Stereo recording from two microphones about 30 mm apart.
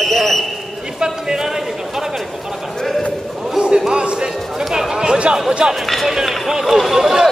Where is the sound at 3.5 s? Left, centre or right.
Right.